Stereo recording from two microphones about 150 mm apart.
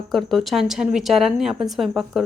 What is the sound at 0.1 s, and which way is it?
Speech, centre (ahead or behind).